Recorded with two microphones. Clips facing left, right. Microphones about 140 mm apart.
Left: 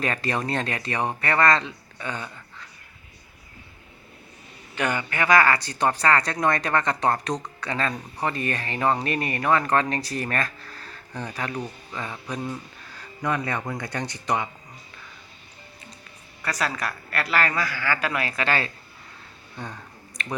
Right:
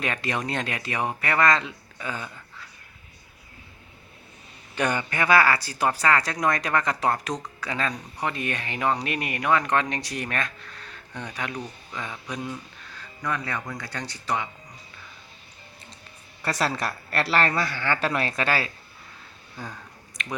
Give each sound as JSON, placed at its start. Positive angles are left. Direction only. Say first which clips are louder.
{"t": 0.0, "sound": "speech", "louder": "left 2 dB", "side_deg": 0}
{"t": 2.0, "sound": "a sound", "louder": "left 1 dB", "side_deg": -5}
{"t": 4.7, "sound": "speech", "louder": "right 1 dB", "side_deg": -15}
{"t": 13.2, "sound": "speech", "louder": "left 3 dB", "side_deg": 20}
{"t": 16.4, "sound": "a woman's voice", "louder": "right 2 dB", "side_deg": -30}
{"t": 18.4, "sound": "speech", "louder": "left 3 dB", "side_deg": -5}
{"t": 19.5, "sound": "a sound", "louder": "left 2 dB", "side_deg": 0}